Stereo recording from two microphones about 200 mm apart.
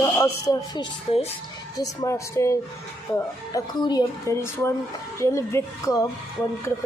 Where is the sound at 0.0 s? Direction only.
20° left (ahead or behind).